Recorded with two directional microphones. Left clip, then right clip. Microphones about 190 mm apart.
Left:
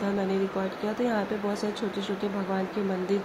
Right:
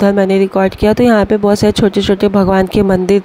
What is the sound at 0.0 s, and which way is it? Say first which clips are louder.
Speech: right 17 dB; 50° right (ahead or behind).